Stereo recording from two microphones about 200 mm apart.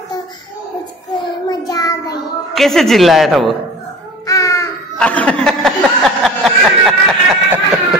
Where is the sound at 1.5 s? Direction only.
20° left (ahead or behind).